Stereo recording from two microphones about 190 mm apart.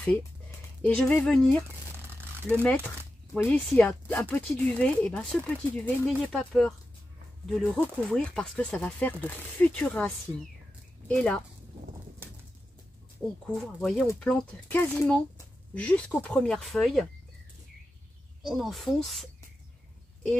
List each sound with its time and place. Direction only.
0.8 s speech: 5° left (ahead or behind)
2.0 s a sound: 10° right (ahead or behind)
3.4 s speech: 5° left (ahead or behind)
13.7 s speech: 5° left (ahead or behind)
18.4 s speech: centre (ahead or behind)